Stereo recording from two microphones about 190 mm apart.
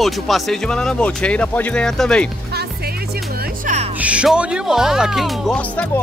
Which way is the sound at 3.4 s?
40° right (ahead or behind).